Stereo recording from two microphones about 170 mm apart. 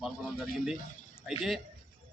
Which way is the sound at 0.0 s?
Centre (ahead or behind).